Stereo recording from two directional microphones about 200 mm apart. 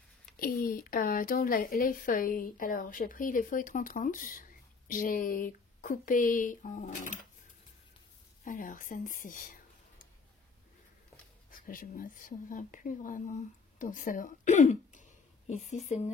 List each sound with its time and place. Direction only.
0.4 s a woman's voice: 45° left (ahead or behind)
8.5 s speech: 45° left (ahead or behind)
11.5 s speech: 45° left (ahead or behind)